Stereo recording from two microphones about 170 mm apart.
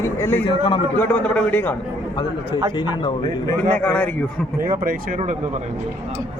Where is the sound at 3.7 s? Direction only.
10° left (ahead or behind).